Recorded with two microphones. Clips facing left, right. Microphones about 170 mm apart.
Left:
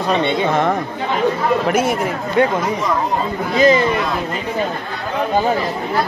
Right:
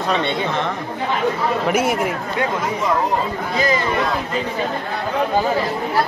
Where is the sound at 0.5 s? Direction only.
50° left (ahead or behind).